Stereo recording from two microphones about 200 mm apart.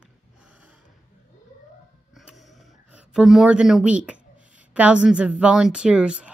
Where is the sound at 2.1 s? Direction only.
Centre (ahead or behind).